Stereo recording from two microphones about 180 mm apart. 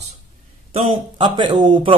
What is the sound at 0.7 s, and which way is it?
Speech, 30° right (ahead or behind).